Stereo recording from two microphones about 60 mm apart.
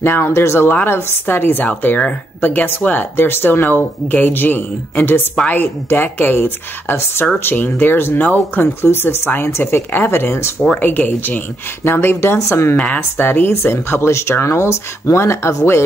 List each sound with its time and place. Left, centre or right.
0.0 s speech: left
8.2 s speech: left
8.8 s speech: left
10.8 s speech: left
12.7 s speech: centre
13.2 s speech: left